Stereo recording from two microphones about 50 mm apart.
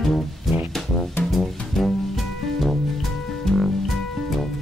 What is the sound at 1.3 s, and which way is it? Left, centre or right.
Music, centre.